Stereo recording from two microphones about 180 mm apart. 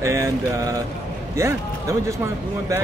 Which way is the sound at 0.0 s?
15° right (ahead or behind).